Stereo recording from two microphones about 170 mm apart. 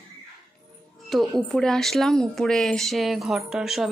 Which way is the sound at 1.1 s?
Centre (ahead or behind).